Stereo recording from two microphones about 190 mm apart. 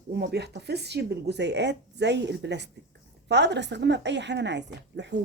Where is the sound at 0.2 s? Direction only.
60° right (ahead or behind).